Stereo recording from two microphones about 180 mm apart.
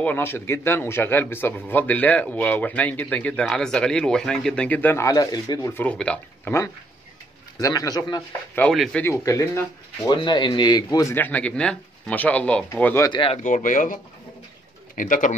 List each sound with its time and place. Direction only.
0.0 s a man's voice: 10° left (ahead or behind)
8.5 s speech: 5° left (ahead or behind)
9.0 s a man's voice: 15° left (ahead or behind)
13.1 s a man's voice: 30° left (ahead or behind)
13.4 s speech: 45° left (ahead or behind)
15.0 s speech: 45° left (ahead or behind)